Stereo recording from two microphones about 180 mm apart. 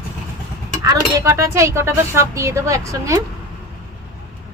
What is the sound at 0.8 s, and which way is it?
Speech, 15° right (ahead or behind).